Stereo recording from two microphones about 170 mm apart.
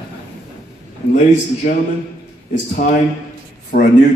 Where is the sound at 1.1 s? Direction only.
45° left (ahead or behind).